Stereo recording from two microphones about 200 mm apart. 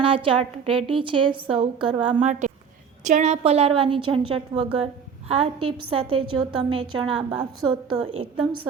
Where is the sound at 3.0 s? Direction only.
35° right (ahead or behind).